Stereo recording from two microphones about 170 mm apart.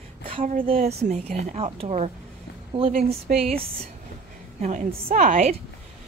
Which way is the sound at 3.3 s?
55° right (ahead or behind).